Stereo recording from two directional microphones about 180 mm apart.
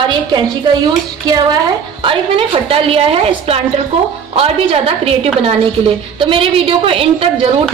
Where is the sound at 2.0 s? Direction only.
30° right (ahead or behind).